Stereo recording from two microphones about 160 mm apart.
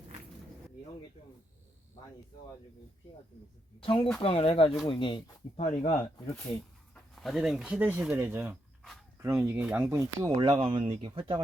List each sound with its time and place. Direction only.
3.8 s speech: 35° left (ahead or behind)
5.5 s speech: 45° left (ahead or behind)
7.2 s speech: centre (ahead or behind); by 11.3 s 30° right (ahead or behind)